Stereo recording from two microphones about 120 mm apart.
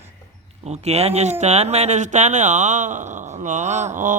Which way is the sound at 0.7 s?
60° right (ahead or behind).